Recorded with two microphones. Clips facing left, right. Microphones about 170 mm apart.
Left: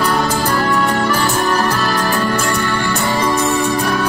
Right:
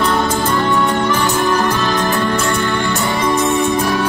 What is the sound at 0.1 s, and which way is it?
Music, 20° right (ahead or behind).